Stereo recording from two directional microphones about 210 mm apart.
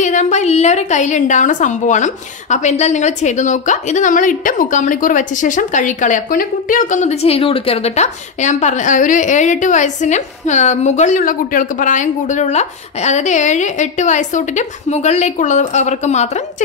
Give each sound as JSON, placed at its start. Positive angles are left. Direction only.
{"t": 0.0, "sound": "a woman's voice", "side_deg": 35}